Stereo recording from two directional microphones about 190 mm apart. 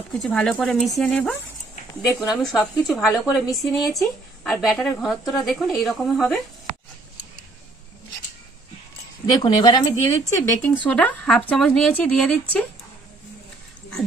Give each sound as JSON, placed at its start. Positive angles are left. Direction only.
{"t": 0.1, "sound": "speech", "side_deg": 5}
{"t": 9.2, "sound": "speech", "side_deg": 20}